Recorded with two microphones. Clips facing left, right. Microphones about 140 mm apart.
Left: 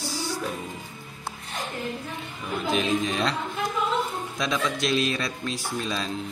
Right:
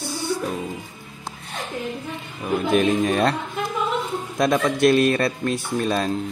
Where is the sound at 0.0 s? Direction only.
55° right (ahead or behind).